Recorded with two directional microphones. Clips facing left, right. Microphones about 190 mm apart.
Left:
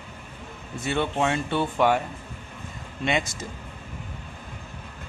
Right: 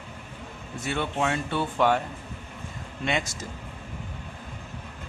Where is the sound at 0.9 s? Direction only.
25° left (ahead or behind).